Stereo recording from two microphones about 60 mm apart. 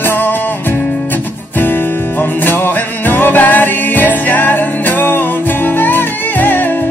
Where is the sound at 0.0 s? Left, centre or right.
Left.